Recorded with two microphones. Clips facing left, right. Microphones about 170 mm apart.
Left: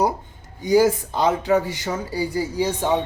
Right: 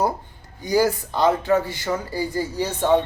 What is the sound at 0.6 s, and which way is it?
Speech, 20° left (ahead or behind).